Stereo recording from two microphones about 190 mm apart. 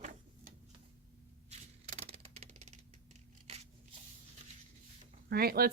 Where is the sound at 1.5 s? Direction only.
35° right (ahead or behind).